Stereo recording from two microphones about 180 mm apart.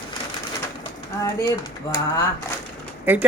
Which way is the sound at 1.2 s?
20° left (ahead or behind).